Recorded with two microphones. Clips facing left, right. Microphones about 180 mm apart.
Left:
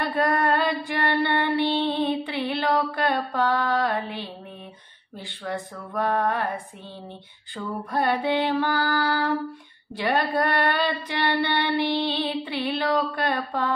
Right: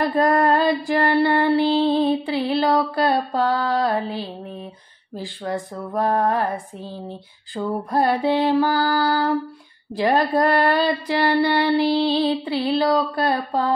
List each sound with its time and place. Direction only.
0.1 s mantra: 35° right (ahead or behind)
5.1 s child singing: 35° right (ahead or behind)
7.5 s child singing: 35° right (ahead or behind)